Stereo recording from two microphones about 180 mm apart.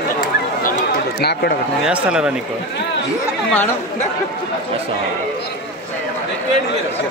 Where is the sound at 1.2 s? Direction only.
60° left (ahead or behind).